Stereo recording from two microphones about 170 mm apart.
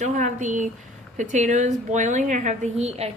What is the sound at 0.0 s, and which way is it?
A woman's voice, 45° right (ahead or behind).